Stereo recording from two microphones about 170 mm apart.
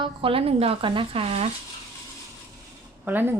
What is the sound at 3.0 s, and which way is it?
Speech, 10° right (ahead or behind).